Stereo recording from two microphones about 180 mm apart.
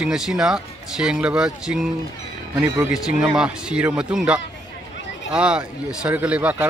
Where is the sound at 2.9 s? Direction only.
5° right (ahead or behind).